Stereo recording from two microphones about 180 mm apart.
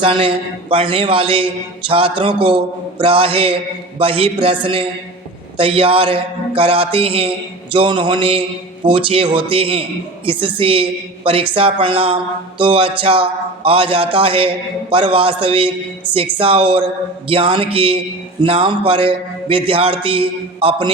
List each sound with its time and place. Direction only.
0.0 s a woman's voice: 30° right (ahead or behind)